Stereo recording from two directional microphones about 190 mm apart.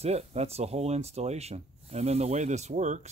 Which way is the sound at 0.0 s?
35° right (ahead or behind).